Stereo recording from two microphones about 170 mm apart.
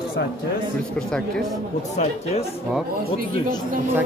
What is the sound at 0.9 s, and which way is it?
Speech, 5° left (ahead or behind).